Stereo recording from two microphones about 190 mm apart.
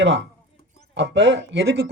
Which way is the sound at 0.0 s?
70° right (ahead or behind).